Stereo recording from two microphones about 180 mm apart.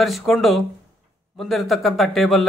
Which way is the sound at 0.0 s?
Centre (ahead or behind).